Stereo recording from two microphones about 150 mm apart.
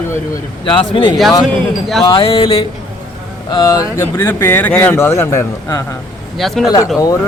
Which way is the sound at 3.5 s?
25° left (ahead or behind).